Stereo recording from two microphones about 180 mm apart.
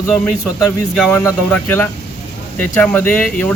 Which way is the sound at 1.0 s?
10° left (ahead or behind).